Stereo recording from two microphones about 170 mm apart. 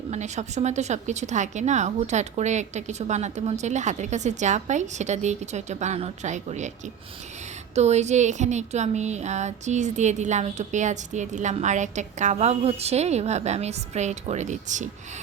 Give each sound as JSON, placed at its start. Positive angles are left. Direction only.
{"t": 0.1, "sound": "speech", "side_deg": -40}
{"t": 7.8, "sound": "speech", "side_deg": -40}